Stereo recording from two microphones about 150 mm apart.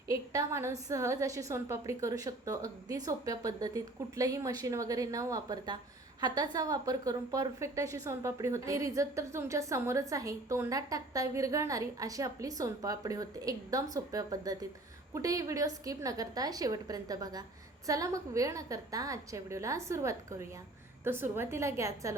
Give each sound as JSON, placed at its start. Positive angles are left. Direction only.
{"t": 0.1, "sound": "a woman's voice", "side_deg": -20}